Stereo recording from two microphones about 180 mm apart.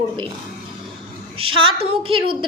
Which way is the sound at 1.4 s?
30° right (ahead or behind).